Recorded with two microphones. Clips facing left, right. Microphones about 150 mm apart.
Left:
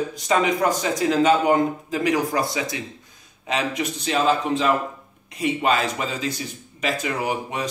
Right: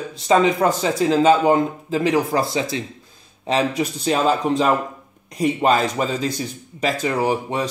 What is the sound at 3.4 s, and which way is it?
A man's voice, 35° right (ahead or behind).